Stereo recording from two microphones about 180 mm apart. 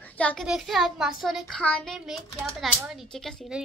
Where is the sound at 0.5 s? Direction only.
Centre (ahead or behind).